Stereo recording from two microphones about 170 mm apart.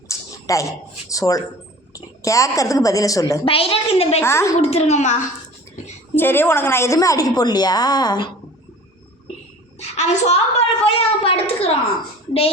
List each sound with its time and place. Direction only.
0.1 s a sound: 20° left (ahead or behind)
1.1 s a woman's voice: 20° left (ahead or behind)
3.4 s a woman's voice: 35° left (ahead or behind)
4.2 s a woman's voice: 15° left (ahead or behind)
4.5 s a woman's voice: 35° left (ahead or behind)
6.1 s a woman's voice: 10° left (ahead or behind)
9.8 s a woman's voice: 40° left (ahead or behind)